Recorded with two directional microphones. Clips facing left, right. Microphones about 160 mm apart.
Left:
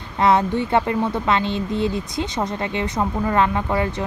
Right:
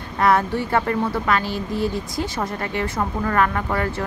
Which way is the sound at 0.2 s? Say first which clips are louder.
Left 1 dB; 20° left (ahead or behind).